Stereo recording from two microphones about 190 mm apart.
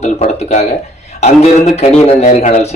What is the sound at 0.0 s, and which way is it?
A man's voice, 35° left (ahead or behind).